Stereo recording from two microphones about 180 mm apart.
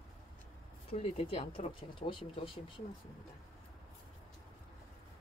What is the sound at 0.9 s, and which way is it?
Speech, 35° left (ahead or behind).